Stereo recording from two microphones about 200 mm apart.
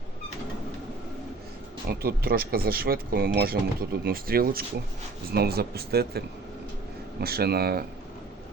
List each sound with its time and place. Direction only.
1.9 s speech: 50° right (ahead or behind)